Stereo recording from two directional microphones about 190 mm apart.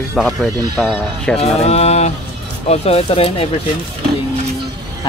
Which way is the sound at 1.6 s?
35° left (ahead or behind).